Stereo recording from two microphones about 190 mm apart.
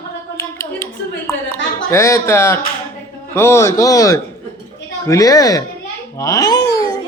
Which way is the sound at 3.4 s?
15° left (ahead or behind).